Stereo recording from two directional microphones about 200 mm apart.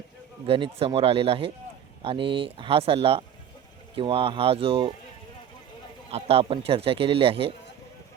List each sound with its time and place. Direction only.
0.4 s speech: 25° right (ahead or behind)
6.1 s speech: 30° right (ahead or behind)